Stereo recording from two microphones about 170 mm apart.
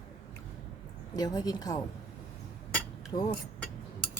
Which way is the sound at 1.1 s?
20° left (ahead or behind).